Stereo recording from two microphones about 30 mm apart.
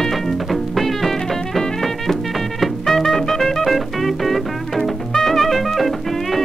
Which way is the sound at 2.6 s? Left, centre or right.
Centre.